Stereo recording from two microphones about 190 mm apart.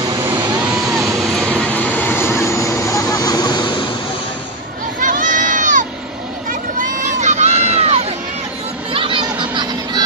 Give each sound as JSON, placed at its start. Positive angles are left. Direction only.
{"t": 0.0, "sound": "vehicle", "side_deg": -15}
{"t": 1.2, "sound": "vehicle", "side_deg": 5}
{"t": 5.0, "sound": "crowd", "side_deg": -40}
{"t": 8.9, "sound": "a sound", "side_deg": -25}